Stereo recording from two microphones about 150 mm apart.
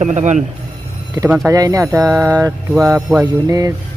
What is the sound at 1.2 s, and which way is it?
Speech, 20° right (ahead or behind).